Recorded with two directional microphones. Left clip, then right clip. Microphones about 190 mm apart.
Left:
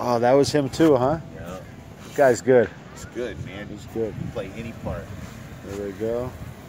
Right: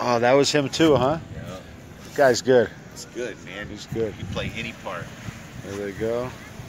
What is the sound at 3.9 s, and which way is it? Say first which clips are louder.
Speech: right 1 dB; 5° left (ahead or behind).